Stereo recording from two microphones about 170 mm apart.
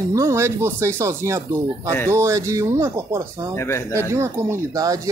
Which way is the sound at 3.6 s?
15° left (ahead or behind).